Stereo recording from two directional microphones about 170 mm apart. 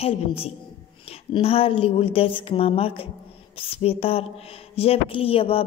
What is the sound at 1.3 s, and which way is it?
A woman's voice, 35° left (ahead or behind).